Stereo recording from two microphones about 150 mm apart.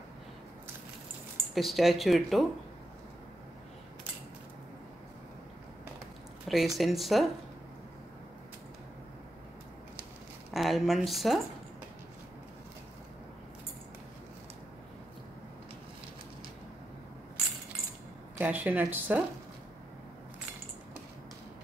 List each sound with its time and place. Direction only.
1.5 s speech: centre (ahead or behind)
6.4 s a sound: centre (ahead or behind)
6.8 s speech: centre (ahead or behind)
10.5 s speech: centre (ahead or behind)
18.4 s speech: 10° right (ahead or behind)